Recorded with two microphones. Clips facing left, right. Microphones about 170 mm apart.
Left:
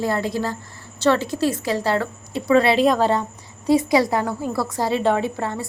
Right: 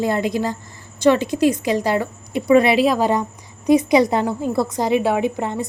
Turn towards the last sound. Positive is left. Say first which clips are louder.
# right 3 dB
turn(degrees=-20)  # may be behind; listen again after turning